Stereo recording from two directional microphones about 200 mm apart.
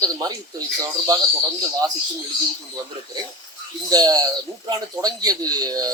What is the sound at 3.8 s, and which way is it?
Speech, 20° right (ahead or behind).